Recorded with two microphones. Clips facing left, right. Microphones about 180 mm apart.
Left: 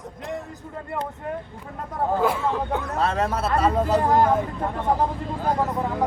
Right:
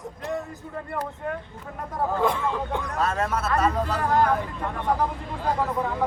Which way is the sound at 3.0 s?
30° left (ahead or behind).